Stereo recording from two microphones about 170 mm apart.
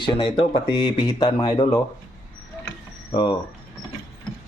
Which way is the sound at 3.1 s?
25° left (ahead or behind).